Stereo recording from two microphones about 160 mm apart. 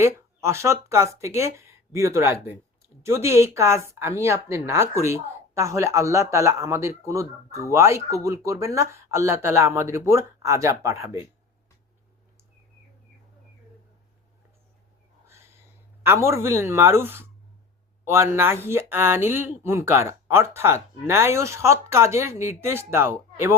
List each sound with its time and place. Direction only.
0.0 s speech: 15° right (ahead or behind)
15.3 s a sound: 15° right (ahead or behind)
18.0 s speech: 15° right (ahead or behind)